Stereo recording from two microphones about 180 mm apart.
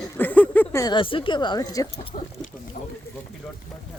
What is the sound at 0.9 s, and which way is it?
Speech, 30° left (ahead or behind).